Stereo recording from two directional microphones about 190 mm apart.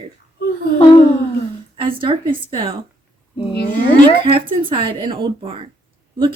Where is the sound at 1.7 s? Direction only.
25° right (ahead or behind).